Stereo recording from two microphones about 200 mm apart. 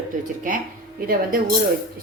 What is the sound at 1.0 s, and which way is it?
Speech, 45° right (ahead or behind).